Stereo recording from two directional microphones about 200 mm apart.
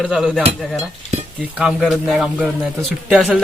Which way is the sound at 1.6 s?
5° right (ahead or behind).